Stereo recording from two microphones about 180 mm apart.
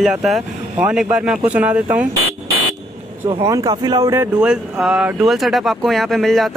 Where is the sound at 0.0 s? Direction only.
Centre (ahead or behind).